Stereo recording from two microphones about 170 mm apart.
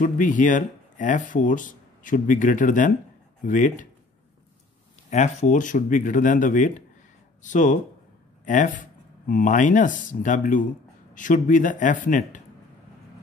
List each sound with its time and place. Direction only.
0.0 s speech: 50° left (ahead or behind)
5.1 s speech: 45° left (ahead or behind)